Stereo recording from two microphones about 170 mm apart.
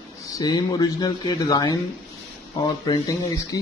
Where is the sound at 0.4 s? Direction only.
20° left (ahead or behind).